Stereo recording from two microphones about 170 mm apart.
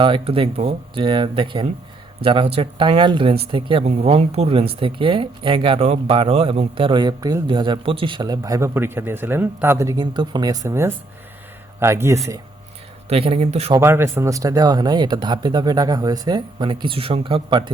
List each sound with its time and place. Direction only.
0.0 s speech: 30° right (ahead or behind); by 12.2 s 15° right (ahead or behind)
13.1 s speech: 35° right (ahead or behind)
13.7 s speech: 15° right (ahead or behind); by 17.6 s 30° right (ahead or behind)